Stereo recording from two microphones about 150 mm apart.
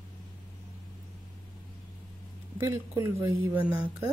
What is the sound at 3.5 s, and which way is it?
Speech, 5° right (ahead or behind).